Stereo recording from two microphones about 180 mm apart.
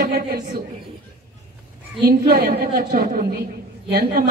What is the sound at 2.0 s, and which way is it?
A man's voice, 60° right (ahead or behind).